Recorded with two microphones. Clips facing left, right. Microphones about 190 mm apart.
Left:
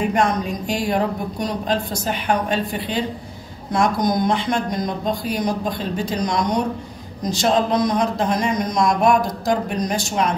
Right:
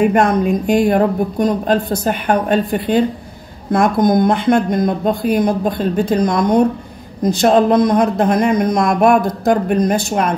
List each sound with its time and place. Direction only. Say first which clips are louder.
0.0 s a woman's voice: right 7 dB; 60° right (ahead or behind)